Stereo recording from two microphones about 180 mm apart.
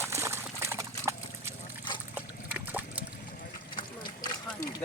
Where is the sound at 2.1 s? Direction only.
10° right (ahead or behind).